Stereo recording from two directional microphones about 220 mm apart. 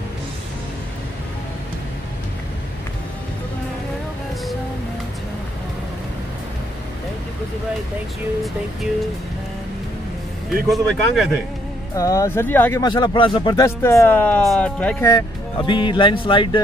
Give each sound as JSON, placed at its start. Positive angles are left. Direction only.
{"t": 10.5, "sound": "speech", "side_deg": 0}
{"t": 11.9, "sound": "speech", "side_deg": 15}
{"t": 15.0, "sound": "speech", "side_deg": 20}